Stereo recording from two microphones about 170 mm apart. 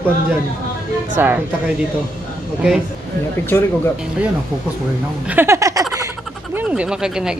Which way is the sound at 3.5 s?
15° left (ahead or behind).